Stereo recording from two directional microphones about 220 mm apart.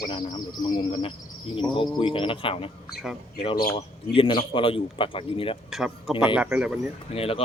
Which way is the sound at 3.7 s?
25° left (ahead or behind).